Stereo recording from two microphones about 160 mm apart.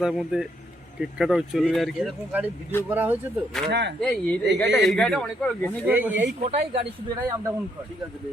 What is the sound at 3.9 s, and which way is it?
Speech, 5° left (ahead or behind).